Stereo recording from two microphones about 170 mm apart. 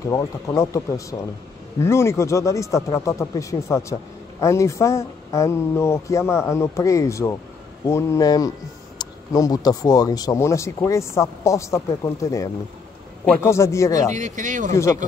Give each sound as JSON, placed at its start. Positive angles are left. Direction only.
{"t": 0.1, "sound": "speech", "side_deg": 20}
{"t": 14.1, "sound": "speech", "side_deg": -45}